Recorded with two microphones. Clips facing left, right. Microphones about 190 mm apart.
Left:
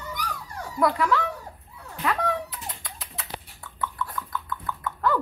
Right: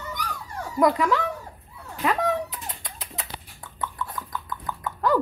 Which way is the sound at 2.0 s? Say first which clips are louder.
Right 3 dB; 20° right (ahead or behind).